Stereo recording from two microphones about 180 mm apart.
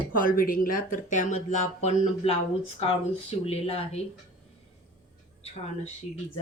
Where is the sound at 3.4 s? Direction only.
35° left (ahead or behind).